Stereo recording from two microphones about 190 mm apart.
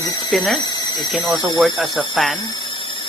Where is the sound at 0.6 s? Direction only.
20° left (ahead or behind).